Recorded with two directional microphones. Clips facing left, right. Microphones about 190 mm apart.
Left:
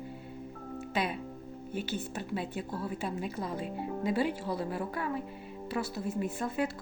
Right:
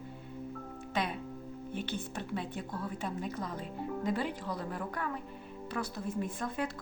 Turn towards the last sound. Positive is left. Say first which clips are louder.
# left 3 dB
turn(degrees=5)  # may be behind; listen again after turning